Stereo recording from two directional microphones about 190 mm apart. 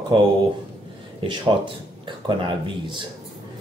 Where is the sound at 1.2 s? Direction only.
30° right (ahead or behind).